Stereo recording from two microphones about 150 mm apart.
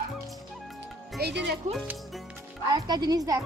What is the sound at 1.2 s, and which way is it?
Speech, 90° right.